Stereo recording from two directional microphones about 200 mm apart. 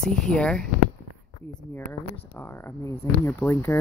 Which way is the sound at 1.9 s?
10° left (ahead or behind).